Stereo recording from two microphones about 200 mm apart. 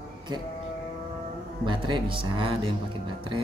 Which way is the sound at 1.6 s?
25° right (ahead or behind).